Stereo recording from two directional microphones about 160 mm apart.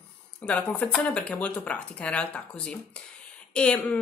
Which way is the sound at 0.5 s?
10° left (ahead or behind).